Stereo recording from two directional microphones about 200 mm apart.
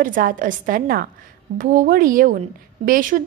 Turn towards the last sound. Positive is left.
turn(degrees=-45)  # may be behind; listen again after turning